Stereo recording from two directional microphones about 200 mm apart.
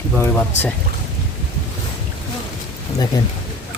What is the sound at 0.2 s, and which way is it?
Speech, 10° left (ahead or behind).